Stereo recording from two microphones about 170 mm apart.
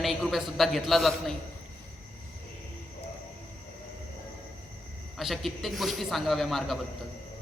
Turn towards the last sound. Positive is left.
turn(degrees=0)  # may be behind; listen again after turning